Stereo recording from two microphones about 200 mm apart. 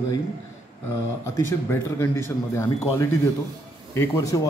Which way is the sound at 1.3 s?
15° left (ahead or behind).